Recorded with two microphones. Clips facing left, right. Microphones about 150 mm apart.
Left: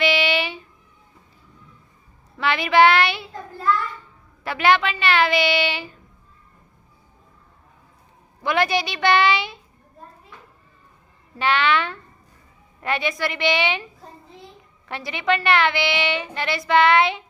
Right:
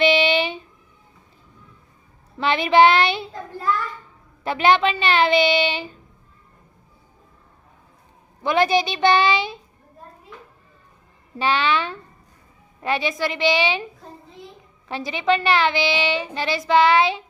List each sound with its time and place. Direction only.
0.0 s a sound: 25° right (ahead or behind)
2.4 s a woman's voice: 20° right (ahead or behind)
4.4 s a woman's voice: 20° right (ahead or behind)
8.4 s a woman's voice: 20° right (ahead or behind)
11.3 s a woman's voice: 15° right (ahead or behind)
14.8 s a woman's voice: 15° right (ahead or behind)